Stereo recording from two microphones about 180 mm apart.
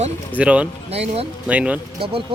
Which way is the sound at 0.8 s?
35° right (ahead or behind).